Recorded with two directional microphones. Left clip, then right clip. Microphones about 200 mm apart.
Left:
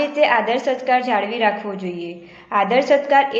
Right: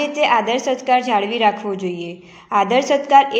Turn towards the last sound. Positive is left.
turn(degrees=-40)  # may be behind; listen again after turning